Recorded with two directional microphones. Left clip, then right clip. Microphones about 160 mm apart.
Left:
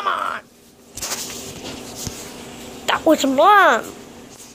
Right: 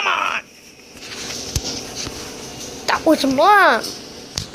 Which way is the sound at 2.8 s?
5° right (ahead or behind).